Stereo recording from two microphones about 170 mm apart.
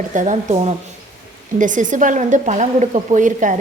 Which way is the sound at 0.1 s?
45° right (ahead or behind).